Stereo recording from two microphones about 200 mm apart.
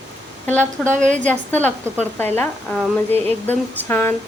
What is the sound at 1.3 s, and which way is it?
A woman's voice, 10° left (ahead or behind).